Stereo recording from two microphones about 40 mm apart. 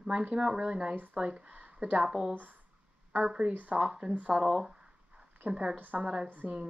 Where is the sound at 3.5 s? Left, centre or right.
Right.